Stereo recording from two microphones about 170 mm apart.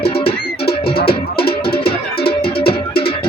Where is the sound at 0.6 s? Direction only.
65° left (ahead or behind).